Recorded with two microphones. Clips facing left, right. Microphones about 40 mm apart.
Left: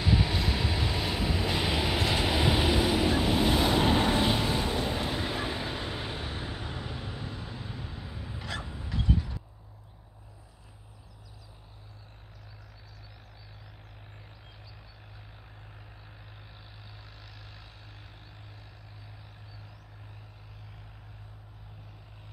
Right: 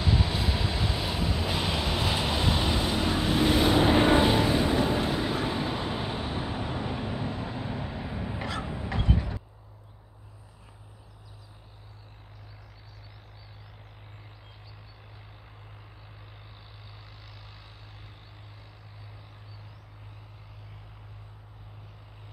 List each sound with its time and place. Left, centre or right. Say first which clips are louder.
0.0 s vehicle: even; centre
3.9 s vehicle: right 4 dB; right
8.6 s a sound: right 2 dB; right